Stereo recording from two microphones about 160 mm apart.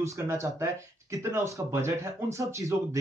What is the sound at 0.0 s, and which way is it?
Speech, 20° right (ahead or behind).